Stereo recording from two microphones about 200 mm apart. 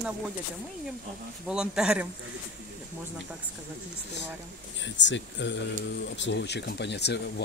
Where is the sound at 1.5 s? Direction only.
5° right (ahead or behind).